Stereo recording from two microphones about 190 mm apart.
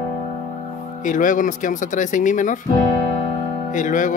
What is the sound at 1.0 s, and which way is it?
Speech, 45° left (ahead or behind).